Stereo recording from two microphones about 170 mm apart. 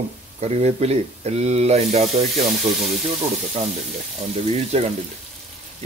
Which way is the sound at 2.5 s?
Centre (ahead or behind).